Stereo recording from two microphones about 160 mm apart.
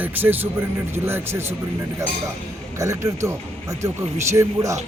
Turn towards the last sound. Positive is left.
turn(degrees=-20)  # may be behind; listen again after turning